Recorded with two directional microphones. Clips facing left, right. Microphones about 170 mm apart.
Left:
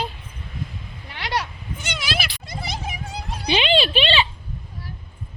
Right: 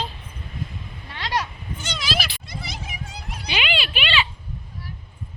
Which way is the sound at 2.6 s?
40° left (ahead or behind).